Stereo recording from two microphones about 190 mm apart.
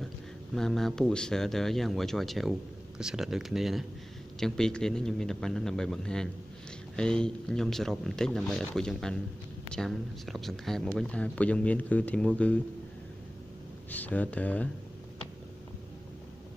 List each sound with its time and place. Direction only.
0.6 s speech: centre (ahead or behind)
13.8 s speech: 10° left (ahead or behind)